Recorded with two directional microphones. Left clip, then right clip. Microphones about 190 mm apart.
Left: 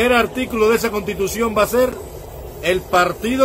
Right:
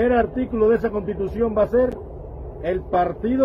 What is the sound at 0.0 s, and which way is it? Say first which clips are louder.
Speech: left 3 dB; 15° left (ahead or behind).